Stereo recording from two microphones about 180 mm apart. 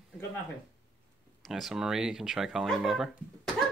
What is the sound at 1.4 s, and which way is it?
Speech, centre (ahead or behind).